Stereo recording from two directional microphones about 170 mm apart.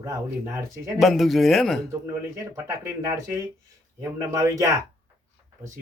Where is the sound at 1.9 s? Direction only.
15° right (ahead or behind).